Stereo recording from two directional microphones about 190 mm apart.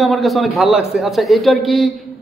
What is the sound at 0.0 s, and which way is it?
A man's voice, centre (ahead or behind).